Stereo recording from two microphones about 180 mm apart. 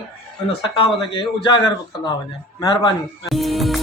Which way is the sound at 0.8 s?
25° left (ahead or behind).